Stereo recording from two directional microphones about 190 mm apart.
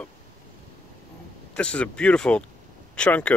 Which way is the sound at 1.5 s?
5° left (ahead or behind).